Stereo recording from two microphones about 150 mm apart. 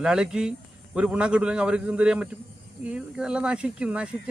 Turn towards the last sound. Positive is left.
turn(degrees=-5)  # may be behind; listen again after turning